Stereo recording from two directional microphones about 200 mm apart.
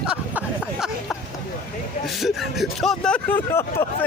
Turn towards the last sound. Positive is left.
turn(degrees=10)  # may be behind; listen again after turning